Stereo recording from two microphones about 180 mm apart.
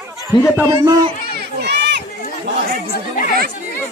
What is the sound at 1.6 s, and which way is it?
Run, 70° right (ahead or behind).